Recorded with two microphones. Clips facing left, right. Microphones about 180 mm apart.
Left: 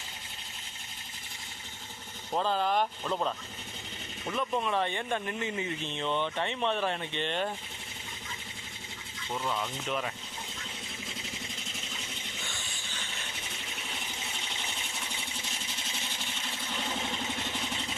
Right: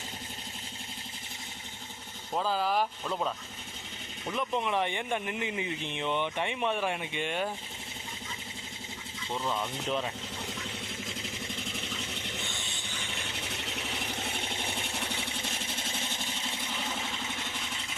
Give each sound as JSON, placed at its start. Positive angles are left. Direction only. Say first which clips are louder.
{"t": 2.3, "sound": "speech", "louder": "left 1 dB", "side_deg": -5}
{"t": 4.3, "sound": "speech", "louder": "even", "side_deg": -15}
{"t": 9.4, "sound": "speech", "louder": "right 1 dB", "side_deg": 0}
{"t": 12.5, "sound": "music", "louder": "right 2 dB", "side_deg": -20}
{"t": 14.1, "sound": "a sound", "louder": "right 5 dB", "side_deg": -60}